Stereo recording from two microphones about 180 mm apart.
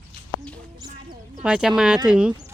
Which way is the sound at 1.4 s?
5° right (ahead or behind).